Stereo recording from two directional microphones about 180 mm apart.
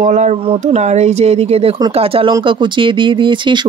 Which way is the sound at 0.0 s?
40° right (ahead or behind).